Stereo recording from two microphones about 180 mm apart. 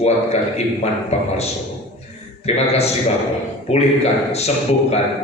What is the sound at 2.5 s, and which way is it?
A man's voice, 35° left (ahead or behind).